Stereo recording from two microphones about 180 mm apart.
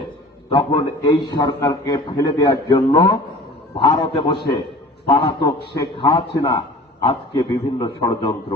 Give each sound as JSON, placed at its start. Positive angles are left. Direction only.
{"t": 0.5, "sound": "a man's voice", "side_deg": 30}